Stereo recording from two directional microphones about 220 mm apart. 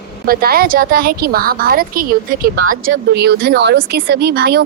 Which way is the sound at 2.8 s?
55° right (ahead or behind).